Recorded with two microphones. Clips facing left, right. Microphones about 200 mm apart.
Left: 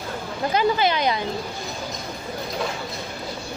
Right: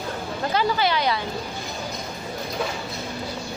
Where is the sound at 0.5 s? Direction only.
20° left (ahead or behind).